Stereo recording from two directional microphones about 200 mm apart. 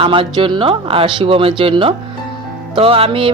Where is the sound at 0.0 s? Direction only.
25° right (ahead or behind).